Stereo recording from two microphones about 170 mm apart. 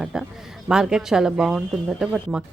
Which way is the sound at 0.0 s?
5° right (ahead or behind).